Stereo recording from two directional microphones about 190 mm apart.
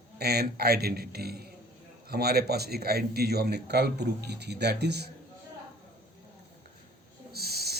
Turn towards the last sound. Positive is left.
turn(degrees=-55)  # may be behind; listen again after turning